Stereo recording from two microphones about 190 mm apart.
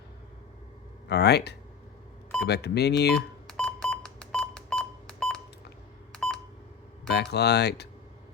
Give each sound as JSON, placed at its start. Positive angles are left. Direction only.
{"t": 1.0, "sound": "speech", "side_deg": 60}
{"t": 3.2, "sound": "beep", "side_deg": 5}
{"t": 6.1, "sound": "telephone dialing", "side_deg": 5}
{"t": 7.1, "sound": "speech", "side_deg": 60}